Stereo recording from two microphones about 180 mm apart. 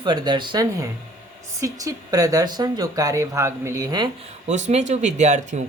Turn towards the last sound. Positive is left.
turn(degrees=-40)  # may be behind; listen again after turning